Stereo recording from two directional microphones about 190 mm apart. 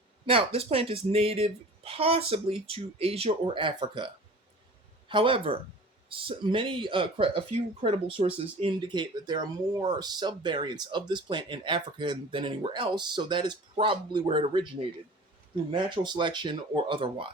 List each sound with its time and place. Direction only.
0.3 s speech: 30° right (ahead or behind)
15.7 s speech: 25° right (ahead or behind)